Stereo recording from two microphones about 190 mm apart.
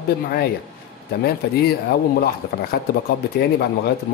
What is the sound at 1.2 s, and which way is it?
Speech, 55° left (ahead or behind).